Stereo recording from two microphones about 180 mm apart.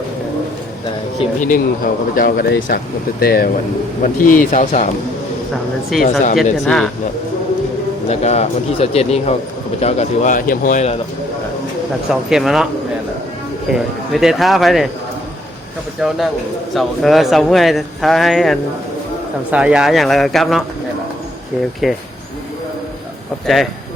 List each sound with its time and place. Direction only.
1.4 s speech: 50° left (ahead or behind)
5.9 s speech: centre (ahead or behind)
8.1 s speech: 35° left (ahead or behind)
12.3 s speech: centre (ahead or behind)
14.1 s speech: centre (ahead or behind)
16.0 s speech: centre (ahead or behind)
21.8 s speech: centre (ahead or behind)